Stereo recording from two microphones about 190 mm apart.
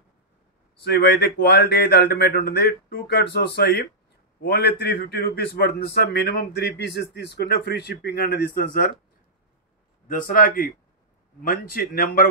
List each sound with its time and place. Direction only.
0.8 s a man's voice: 60° left (ahead or behind)
10.0 s a man's voice: 45° left (ahead or behind)